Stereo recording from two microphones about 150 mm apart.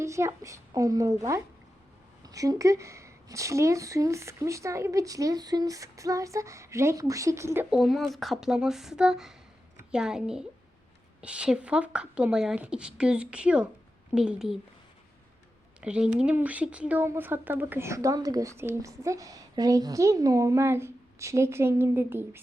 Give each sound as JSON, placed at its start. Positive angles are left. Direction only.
{"t": 0.0, "sound": "a woman's voice", "side_deg": -20}
{"t": 7.7, "sound": "speech", "side_deg": 0}
{"t": 15.8, "sound": "speech", "side_deg": -5}